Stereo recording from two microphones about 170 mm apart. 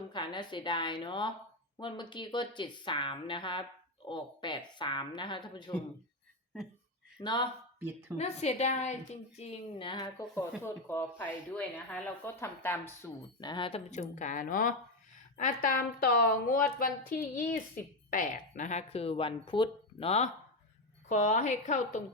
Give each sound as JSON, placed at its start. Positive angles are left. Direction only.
{"t": 0.1, "sound": "a woman's voice", "side_deg": 25}
{"t": 7.2, "sound": "a woman's voice", "side_deg": 25}
{"t": 7.8, "sound": "a woman's voice", "side_deg": -10}
{"t": 8.2, "sound": "a woman's voice", "side_deg": 40}
{"t": 13.4, "sound": "a woman's voice", "side_deg": 25}